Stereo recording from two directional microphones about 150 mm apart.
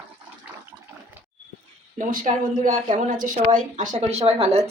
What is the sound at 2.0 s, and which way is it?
Speech, 60° right (ahead or behind).